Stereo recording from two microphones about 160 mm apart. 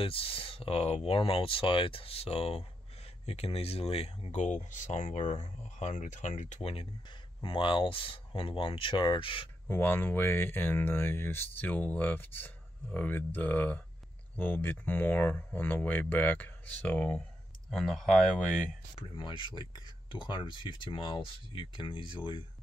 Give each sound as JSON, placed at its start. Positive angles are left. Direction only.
{"t": 0.0, "sound": "speech", "side_deg": 35}
{"t": 9.7, "sound": "speech", "side_deg": 10}
{"t": 18.9, "sound": "speech", "side_deg": 30}